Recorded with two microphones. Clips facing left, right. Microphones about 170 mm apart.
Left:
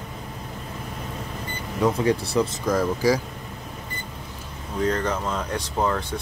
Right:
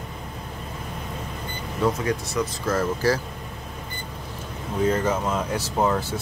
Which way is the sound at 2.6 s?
10° left (ahead or behind).